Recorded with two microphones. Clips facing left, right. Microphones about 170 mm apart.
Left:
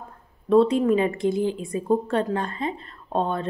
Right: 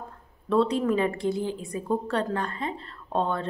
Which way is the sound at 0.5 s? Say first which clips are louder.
Left 5 dB; 20° left (ahead or behind).